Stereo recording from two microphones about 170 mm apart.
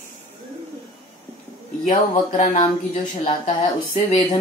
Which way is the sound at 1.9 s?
50° left (ahead or behind).